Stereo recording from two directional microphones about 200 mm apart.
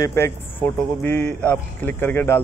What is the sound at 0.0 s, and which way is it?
Speech, 15° left (ahead or behind).